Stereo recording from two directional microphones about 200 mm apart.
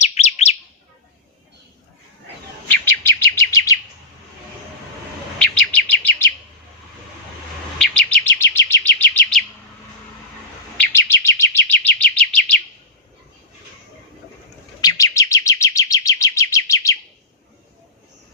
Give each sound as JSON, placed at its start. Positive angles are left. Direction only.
{"t": 0.0, "sound": "chirp", "side_deg": 35}
{"t": 2.6, "sound": "chirp", "side_deg": 10}
{"t": 5.4, "sound": "chirp", "side_deg": 10}
{"t": 7.8, "sound": "chirp", "side_deg": 5}
{"t": 10.8, "sound": "chirp", "side_deg": 10}
{"t": 14.8, "sound": "chirp", "side_deg": 20}